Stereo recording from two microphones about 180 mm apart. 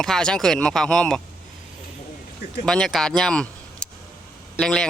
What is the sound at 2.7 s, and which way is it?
Speech, 5° left (ahead or behind).